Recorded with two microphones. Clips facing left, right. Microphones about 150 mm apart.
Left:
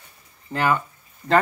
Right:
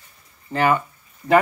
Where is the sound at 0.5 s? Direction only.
5° right (ahead or behind).